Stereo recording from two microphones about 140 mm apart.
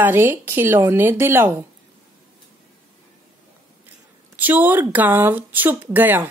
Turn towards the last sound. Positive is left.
turn(degrees=-15)  # may be behind; listen again after turning